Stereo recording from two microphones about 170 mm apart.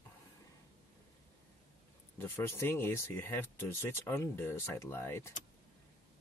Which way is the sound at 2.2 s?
15° left (ahead or behind).